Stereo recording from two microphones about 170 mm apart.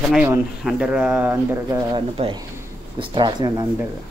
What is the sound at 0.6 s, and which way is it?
Speech, 5° right (ahead or behind).